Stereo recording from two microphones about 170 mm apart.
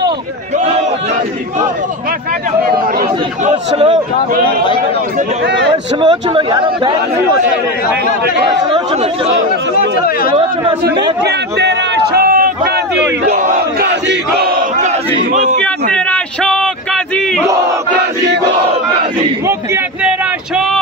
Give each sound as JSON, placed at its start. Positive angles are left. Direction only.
{"t": 3.4, "sound": "speech", "side_deg": -35}
{"t": 6.0, "sound": "a man's voice", "side_deg": -25}
{"t": 11.2, "sound": "a man's voice", "side_deg": -80}
{"t": 13.4, "sound": "battle cry", "side_deg": -65}
{"t": 15.6, "sound": "a man's voice", "side_deg": 5}
{"t": 19.4, "sound": "a man's voice", "side_deg": -15}